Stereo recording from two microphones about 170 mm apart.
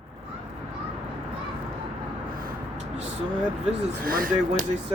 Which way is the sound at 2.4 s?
40° right (ahead or behind).